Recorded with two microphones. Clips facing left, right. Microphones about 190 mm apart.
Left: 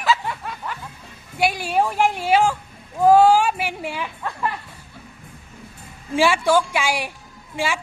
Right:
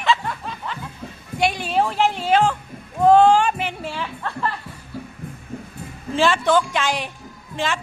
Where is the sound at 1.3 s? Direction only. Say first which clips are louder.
Even; 5° left (ahead or behind).